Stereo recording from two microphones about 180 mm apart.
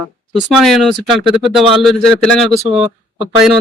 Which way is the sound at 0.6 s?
Centre (ahead or behind).